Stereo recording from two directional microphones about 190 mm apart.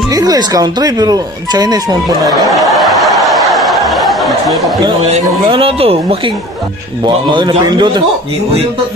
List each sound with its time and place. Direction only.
0.1 s speech: 20° right (ahead or behind)
2.6 s a sound: centre (ahead or behind)
5.1 s speech: 30° right (ahead or behind)